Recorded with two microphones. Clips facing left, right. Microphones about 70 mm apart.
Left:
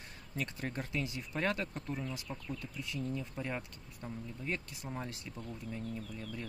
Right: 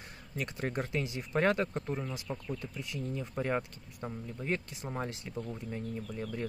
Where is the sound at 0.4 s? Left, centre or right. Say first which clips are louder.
Right 4 dB; right.